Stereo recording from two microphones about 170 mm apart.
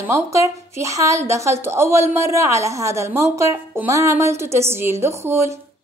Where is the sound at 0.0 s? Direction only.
15° right (ahead or behind).